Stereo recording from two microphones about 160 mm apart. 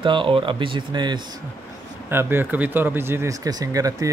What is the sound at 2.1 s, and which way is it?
Speech, 15° right (ahead or behind).